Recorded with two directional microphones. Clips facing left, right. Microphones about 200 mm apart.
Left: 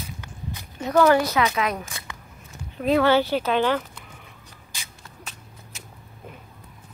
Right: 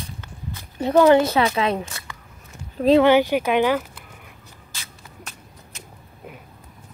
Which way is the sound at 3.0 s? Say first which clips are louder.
Right 3 dB; 15° right (ahead or behind).